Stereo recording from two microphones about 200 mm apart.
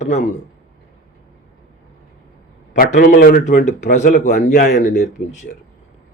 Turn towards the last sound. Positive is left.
turn(degrees=35)  # may be behind; listen again after turning